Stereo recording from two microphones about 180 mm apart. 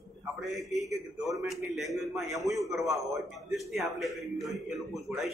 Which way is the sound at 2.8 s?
15° right (ahead or behind).